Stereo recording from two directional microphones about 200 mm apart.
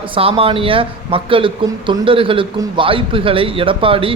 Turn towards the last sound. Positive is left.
turn(degrees=-25)  # may be behind; listen again after turning